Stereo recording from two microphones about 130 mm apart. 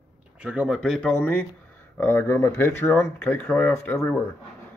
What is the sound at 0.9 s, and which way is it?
Speech, 10° left (ahead or behind).